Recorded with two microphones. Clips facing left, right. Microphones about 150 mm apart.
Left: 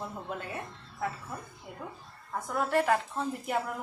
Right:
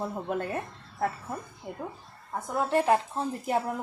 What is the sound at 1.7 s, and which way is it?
Speech, 45° right (ahead or behind).